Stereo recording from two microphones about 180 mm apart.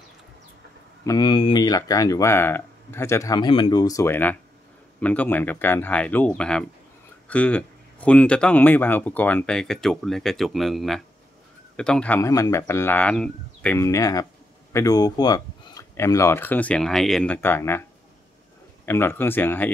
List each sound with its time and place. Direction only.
1.0 s speech: 20° left (ahead or behind)
13.8 s speech: 20° left (ahead or behind)
18.9 s speech: 10° left (ahead or behind)